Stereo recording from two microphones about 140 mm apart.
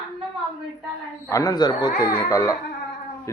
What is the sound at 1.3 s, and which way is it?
Speech, 25° left (ahead or behind).